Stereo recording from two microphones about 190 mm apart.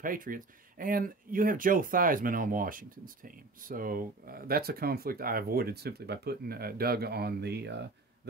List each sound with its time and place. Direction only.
0.0 s speech: 45° right (ahead or behind); by 7.8 s 60° right (ahead or behind)